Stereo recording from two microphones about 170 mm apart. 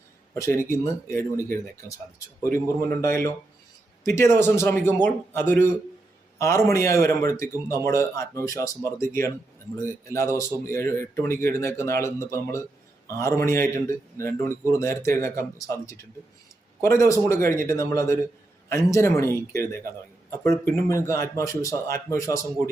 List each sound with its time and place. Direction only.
0.3 s speech: 15° left (ahead or behind)
20.8 s speech: 15° left (ahead or behind)